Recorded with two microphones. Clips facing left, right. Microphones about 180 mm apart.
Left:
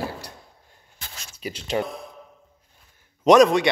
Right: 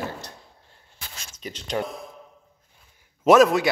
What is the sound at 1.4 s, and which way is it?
Speech, 5° left (ahead or behind).